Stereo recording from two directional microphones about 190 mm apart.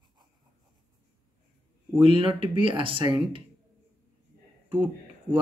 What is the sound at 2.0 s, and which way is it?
Speech, 30° right (ahead or behind).